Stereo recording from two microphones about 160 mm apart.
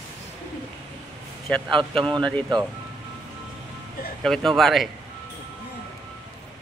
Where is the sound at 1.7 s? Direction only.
30° right (ahead or behind).